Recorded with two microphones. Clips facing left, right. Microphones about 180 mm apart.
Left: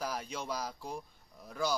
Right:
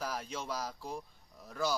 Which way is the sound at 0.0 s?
Centre (ahead or behind).